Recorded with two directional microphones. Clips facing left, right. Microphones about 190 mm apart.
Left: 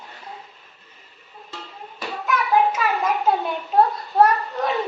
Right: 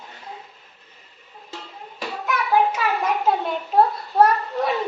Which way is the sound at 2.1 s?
Centre (ahead or behind).